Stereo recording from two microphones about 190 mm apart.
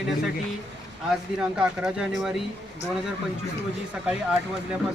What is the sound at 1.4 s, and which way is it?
Speech, 5° right (ahead or behind).